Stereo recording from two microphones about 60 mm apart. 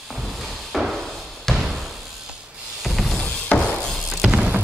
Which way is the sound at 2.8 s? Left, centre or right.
Centre.